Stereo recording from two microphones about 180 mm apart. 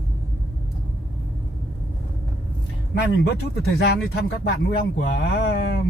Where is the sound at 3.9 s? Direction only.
70° left (ahead or behind).